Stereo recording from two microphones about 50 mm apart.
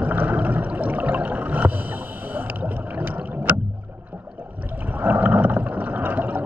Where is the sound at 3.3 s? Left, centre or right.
Right.